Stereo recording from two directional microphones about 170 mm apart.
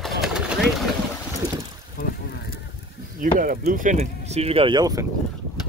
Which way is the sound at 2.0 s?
65° left (ahead or behind).